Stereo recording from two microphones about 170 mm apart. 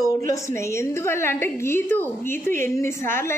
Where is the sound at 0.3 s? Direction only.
15° left (ahead or behind).